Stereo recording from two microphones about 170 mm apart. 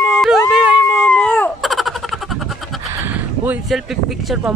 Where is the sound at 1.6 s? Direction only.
Centre (ahead or behind).